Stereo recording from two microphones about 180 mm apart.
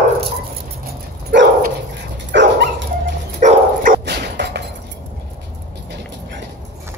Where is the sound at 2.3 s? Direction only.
75° right (ahead or behind).